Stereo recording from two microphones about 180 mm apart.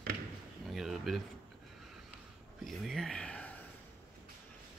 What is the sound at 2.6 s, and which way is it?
Speech, centre (ahead or behind).